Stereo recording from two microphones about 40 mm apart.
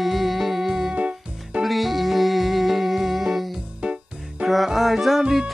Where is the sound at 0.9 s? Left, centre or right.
Right.